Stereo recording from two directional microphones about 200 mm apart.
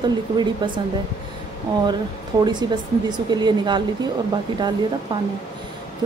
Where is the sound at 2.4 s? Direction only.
20° right (ahead or behind).